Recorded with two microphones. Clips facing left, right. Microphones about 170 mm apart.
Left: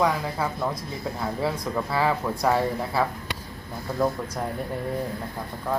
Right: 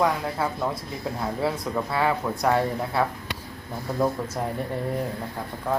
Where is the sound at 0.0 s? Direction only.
Centre (ahead or behind).